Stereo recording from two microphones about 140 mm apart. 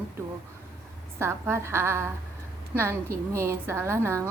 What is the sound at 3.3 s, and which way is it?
Speech, 20° right (ahead or behind).